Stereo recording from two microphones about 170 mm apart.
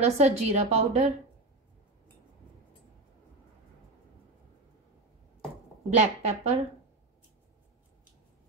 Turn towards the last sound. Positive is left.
turn(degrees=-40)  # may be behind; listen again after turning